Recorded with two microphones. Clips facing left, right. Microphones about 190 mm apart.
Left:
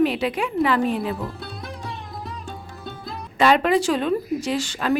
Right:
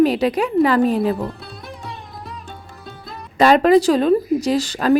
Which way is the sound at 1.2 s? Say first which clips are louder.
Right 2 dB; centre (ahead or behind).